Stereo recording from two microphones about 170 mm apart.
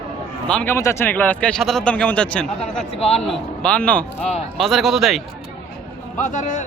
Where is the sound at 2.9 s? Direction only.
35° left (ahead or behind).